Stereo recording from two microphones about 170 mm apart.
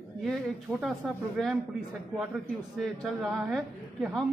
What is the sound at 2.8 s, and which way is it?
A man's voice, centre (ahead or behind).